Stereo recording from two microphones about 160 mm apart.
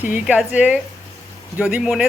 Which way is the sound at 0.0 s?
10° right (ahead or behind).